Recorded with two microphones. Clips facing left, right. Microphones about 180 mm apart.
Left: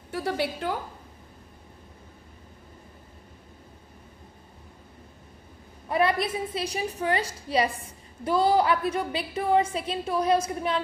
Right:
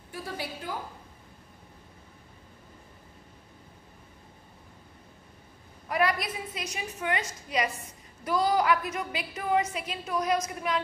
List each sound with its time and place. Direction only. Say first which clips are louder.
0.1 s a woman's voice: left 9 dB; 70° left (ahead or behind)
5.9 s a woman's voice: left 3 dB; 25° left (ahead or behind)